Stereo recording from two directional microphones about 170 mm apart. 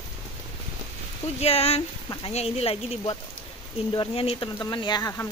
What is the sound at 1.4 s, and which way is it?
Speech, 35° left (ahead or behind).